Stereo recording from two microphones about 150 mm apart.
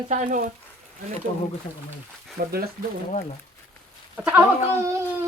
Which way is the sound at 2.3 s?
90° right.